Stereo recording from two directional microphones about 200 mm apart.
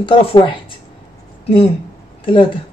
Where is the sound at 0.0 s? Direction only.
25° left (ahead or behind).